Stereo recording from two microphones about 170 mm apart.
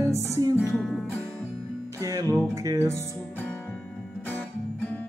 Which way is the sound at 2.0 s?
20° right (ahead or behind).